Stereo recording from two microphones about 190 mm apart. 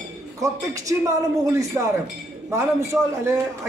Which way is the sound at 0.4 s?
15° right (ahead or behind).